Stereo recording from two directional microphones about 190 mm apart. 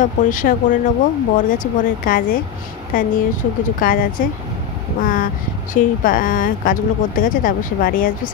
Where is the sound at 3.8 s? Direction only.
50° left (ahead or behind).